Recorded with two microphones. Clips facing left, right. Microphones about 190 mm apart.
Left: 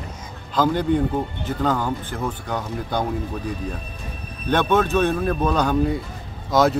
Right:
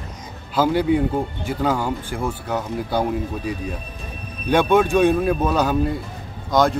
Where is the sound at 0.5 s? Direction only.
10° right (ahead or behind).